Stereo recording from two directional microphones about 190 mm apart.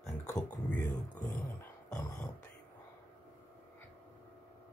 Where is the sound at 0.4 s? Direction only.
5° left (ahead or behind).